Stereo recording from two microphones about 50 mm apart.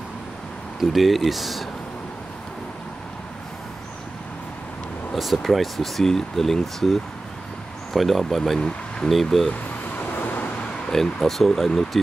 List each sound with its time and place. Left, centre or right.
0.7 s speech: centre
5.1 s speech: centre
8.5 s speech: centre
9.1 s speech: centre
10.1 s vehicle: left
10.9 s speech: centre